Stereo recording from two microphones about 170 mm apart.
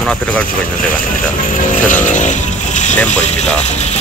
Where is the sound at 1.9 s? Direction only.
50° left (ahead or behind).